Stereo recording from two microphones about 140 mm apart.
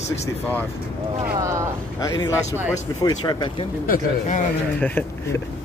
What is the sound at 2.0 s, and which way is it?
Speech, 25° left (ahead or behind).